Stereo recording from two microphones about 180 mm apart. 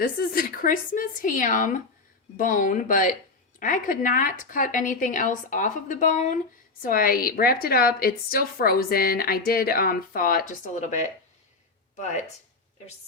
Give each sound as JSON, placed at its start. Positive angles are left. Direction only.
{"t": 0.0, "sound": "a woman's voice", "side_deg": 55}